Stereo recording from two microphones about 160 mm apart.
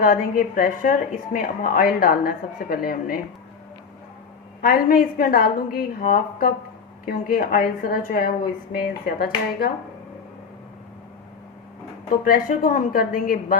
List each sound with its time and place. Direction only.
0.0 s a woman's voice: 60° left (ahead or behind)
4.6 s a woman's voice: 65° left (ahead or behind)
12.2 s a woman's voice: 60° left (ahead or behind)